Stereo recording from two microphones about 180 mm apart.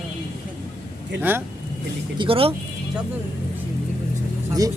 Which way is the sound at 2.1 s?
30° right (ahead or behind).